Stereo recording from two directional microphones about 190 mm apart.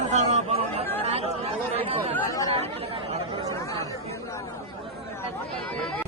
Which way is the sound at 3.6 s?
15° left (ahead or behind).